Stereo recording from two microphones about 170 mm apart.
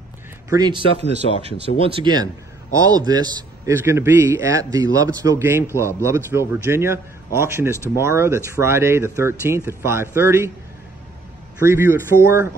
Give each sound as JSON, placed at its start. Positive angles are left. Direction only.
{"t": 0.5, "sound": "a man's voice", "side_deg": -25}
{"t": 11.6, "sound": "a man's voice", "side_deg": -15}